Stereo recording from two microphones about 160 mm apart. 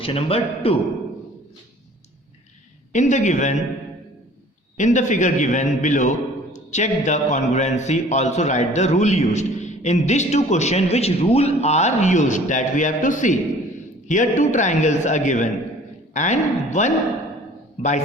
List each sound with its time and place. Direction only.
0.0 s a man's voice: 35° left (ahead or behind)
2.9 s a man's voice: 50° left (ahead or behind)
4.8 s a man's voice: 50° left (ahead or behind)